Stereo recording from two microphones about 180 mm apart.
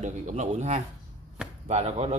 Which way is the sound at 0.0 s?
40° right (ahead or behind).